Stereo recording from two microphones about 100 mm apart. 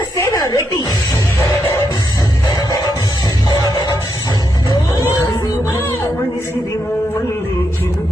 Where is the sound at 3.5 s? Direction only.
40° left (ahead or behind).